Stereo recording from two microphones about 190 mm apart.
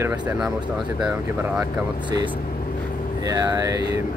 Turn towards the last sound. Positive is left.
turn(degrees=-15)  # may be behind; listen again after turning